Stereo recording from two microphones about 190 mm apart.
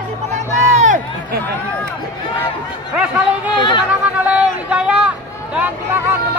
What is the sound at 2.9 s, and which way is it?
Speech, 5° right (ahead or behind).